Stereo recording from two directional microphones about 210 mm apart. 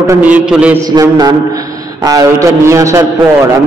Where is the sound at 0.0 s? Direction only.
10° right (ahead or behind).